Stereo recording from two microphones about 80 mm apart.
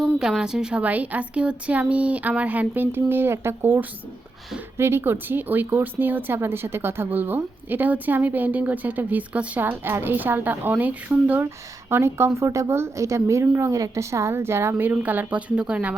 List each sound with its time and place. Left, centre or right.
0.0 s speech: centre
11.4 s a woman's voice: right; by 16.0 s centre